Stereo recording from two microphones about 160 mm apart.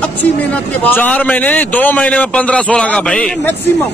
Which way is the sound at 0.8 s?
10° left (ahead or behind).